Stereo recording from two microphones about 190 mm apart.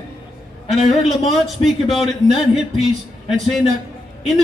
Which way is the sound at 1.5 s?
Centre (ahead or behind).